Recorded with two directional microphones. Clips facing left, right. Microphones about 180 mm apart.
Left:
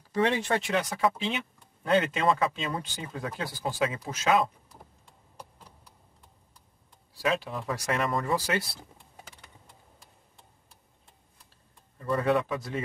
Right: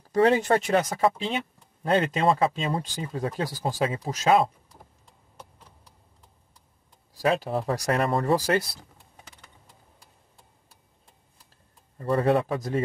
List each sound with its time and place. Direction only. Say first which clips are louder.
0.0 s speech: right 6 dB; 45° right (ahead or behind)
7.2 s speech: right 5 dB; 40° right (ahead or behind)
12.0 s speech: right 3 dB; 30° right (ahead or behind)